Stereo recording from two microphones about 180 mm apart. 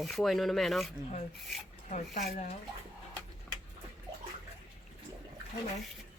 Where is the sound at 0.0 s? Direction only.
Centre (ahead or behind).